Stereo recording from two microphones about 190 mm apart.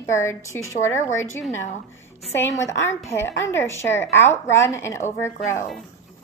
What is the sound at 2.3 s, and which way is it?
A woman's voice, 15° left (ahead or behind).